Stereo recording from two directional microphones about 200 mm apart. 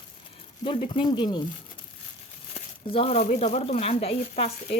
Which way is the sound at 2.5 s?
30° left (ahead or behind).